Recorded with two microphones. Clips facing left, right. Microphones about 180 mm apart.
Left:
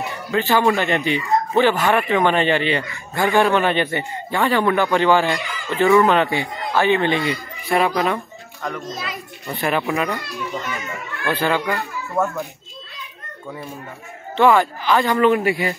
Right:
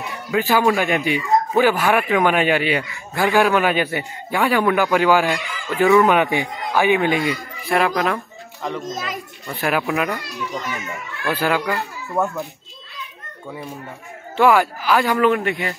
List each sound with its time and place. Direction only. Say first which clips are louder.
0.3 s speech: even; 10° right (ahead or behind)
8.8 s a child's voice: right 2 dB; 45° right (ahead or behind)
9.5 s speech: even; 5° right (ahead or behind)
11.2 s speech: even; 5° right (ahead or behind)
14.3 s speech: even; 10° right (ahead or behind)